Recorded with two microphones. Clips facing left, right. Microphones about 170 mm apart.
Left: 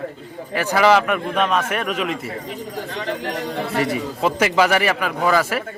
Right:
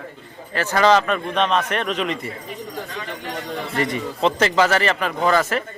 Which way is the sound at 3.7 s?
5° left (ahead or behind).